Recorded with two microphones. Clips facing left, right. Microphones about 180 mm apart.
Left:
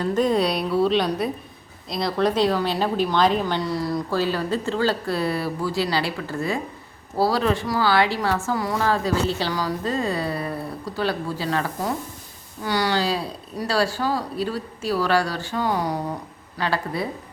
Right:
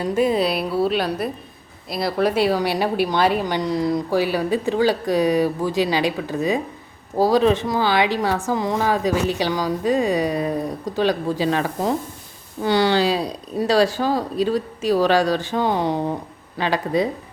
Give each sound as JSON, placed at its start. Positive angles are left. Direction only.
{"t": 0.0, "sound": "a woman's voice", "side_deg": -10}